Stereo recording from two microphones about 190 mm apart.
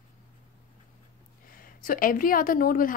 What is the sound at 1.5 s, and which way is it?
A woman's voice, 50° left (ahead or behind).